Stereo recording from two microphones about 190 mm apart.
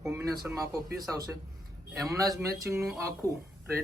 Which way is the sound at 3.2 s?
15° right (ahead or behind).